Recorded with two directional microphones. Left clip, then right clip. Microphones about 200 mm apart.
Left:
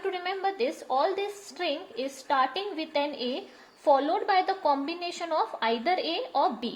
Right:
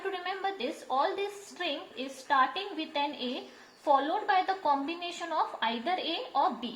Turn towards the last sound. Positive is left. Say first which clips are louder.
# left 2 dB
turn(degrees=45)  # may be behind; listen again after turning